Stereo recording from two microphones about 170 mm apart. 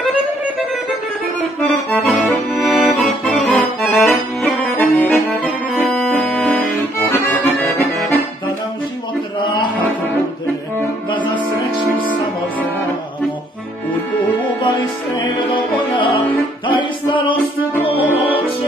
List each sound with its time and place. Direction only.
1.6 s accordion: 10° left (ahead or behind)
2.1 s accordion: centre (ahead or behind)
9.4 s music: 25° left (ahead or behind)
14.6 s music: 25° left (ahead or behind)